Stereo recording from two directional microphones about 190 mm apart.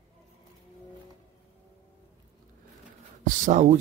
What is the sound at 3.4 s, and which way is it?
Speech, 40° right (ahead or behind).